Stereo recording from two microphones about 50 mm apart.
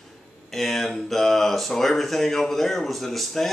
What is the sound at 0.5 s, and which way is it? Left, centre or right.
Speech, centre.